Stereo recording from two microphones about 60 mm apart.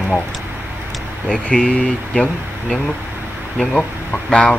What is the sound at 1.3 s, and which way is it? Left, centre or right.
Speech, centre.